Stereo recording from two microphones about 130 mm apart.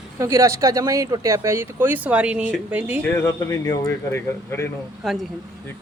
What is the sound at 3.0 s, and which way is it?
Speech, 20° left (ahead or behind).